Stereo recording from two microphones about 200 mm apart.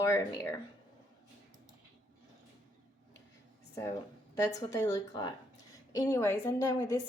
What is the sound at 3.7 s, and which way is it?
A woman's voice, 15° left (ahead or behind).